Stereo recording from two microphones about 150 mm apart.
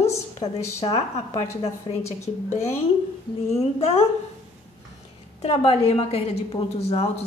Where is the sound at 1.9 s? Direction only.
30° left (ahead or behind).